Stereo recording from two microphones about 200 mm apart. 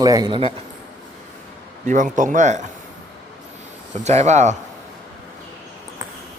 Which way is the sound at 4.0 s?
35° right (ahead or behind).